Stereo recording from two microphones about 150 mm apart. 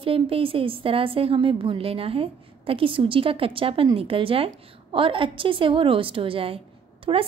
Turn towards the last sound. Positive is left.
turn(degrees=-35)  # may be behind; listen again after turning